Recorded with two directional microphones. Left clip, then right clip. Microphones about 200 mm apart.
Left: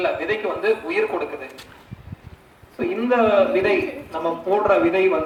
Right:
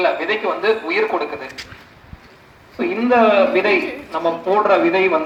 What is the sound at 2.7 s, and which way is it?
Speech, 20° left (ahead or behind).